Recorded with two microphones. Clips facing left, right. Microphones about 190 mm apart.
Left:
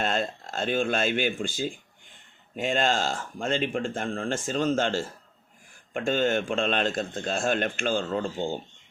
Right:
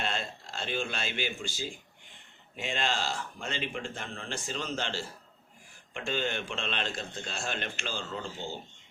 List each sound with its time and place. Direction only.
0.0 s a man's voice: 45° left (ahead or behind)